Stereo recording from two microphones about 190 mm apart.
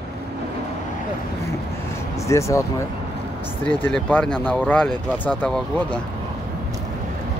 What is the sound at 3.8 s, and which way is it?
Speech, 5° left (ahead or behind).